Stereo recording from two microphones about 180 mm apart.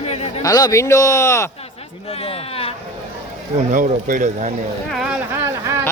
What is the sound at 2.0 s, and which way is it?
Speech, 35° left (ahead or behind).